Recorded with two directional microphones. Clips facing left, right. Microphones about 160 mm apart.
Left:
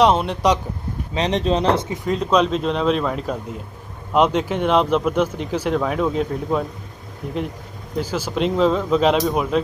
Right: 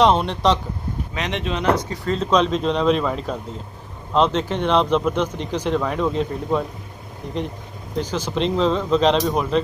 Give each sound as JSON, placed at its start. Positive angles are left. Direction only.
{"t": 0.0, "sound": "speech", "side_deg": 5}
{"t": 1.1, "sound": "speech", "side_deg": 35}
{"t": 2.0, "sound": "speech", "side_deg": 5}
{"t": 8.0, "sound": "speech", "side_deg": 10}